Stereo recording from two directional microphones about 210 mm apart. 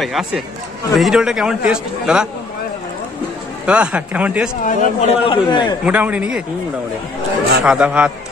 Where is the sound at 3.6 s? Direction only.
5° right (ahead or behind).